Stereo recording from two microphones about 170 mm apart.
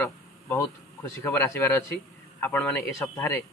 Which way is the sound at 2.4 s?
15° left (ahead or behind).